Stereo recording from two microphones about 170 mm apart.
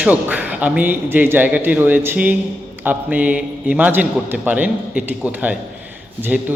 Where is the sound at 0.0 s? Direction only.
10° right (ahead or behind).